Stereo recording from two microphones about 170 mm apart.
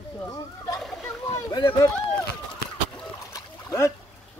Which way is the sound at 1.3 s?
20° left (ahead or behind).